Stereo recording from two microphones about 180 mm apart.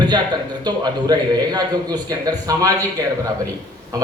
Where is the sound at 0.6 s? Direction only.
25° right (ahead or behind).